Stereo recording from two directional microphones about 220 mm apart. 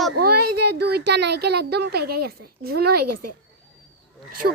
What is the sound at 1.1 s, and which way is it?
A child's voice, 50° right (ahead or behind).